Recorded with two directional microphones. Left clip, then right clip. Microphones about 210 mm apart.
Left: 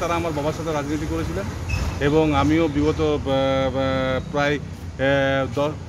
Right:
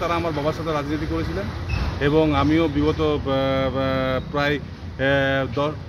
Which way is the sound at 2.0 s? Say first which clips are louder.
Even; 5° right (ahead or behind).